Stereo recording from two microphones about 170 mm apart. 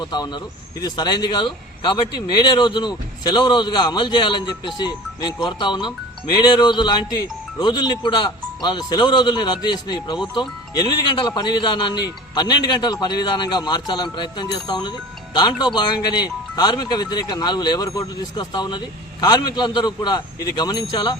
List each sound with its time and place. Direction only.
0.0 s speech: 25° left (ahead or behind)